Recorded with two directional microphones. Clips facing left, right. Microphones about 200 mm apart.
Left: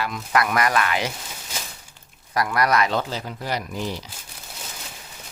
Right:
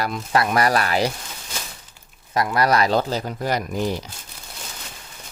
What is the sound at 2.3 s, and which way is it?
Speech, 25° right (ahead or behind).